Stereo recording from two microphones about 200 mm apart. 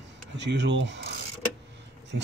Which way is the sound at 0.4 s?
60° right (ahead or behind).